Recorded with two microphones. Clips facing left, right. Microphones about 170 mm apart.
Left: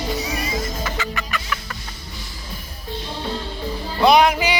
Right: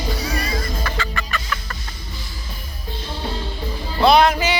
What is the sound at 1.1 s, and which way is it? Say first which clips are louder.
Chicken: even; 15° left (ahead or behind).